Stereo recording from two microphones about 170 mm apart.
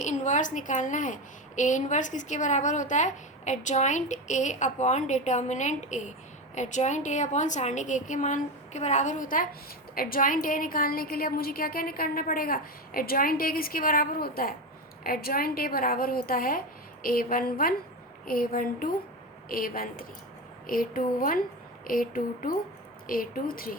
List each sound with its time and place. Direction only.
0.0 s a woman's voice: 45° left (ahead or behind)